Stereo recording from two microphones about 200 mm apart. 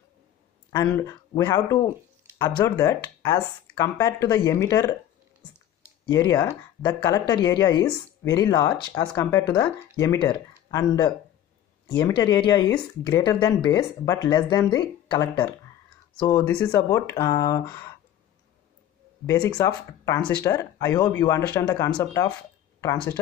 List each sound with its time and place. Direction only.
0.7 s speech: 15° left (ahead or behind)
6.0 s speech: 20° left (ahead or behind)
19.2 s speech: 20° left (ahead or behind)